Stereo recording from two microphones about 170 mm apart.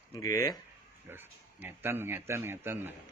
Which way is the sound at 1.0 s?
10° right (ahead or behind).